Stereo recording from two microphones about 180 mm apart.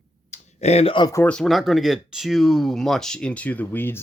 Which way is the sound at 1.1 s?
10° left (ahead or behind).